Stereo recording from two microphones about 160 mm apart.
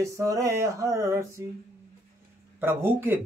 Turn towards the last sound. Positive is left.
turn(degrees=-15)  # may be behind; listen again after turning